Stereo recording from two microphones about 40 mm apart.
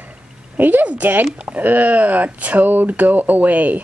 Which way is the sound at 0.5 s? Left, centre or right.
Right.